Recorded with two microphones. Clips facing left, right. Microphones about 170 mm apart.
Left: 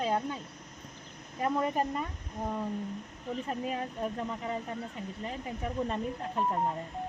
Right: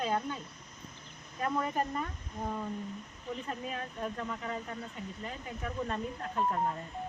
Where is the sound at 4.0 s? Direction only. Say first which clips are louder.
Left 2 dB; 30° left (ahead or behind).